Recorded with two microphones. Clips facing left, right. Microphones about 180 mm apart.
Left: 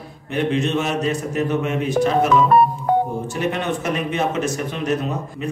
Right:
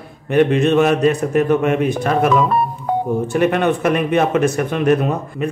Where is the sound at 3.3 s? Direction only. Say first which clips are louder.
Right 7 dB; 60° right (ahead or behind).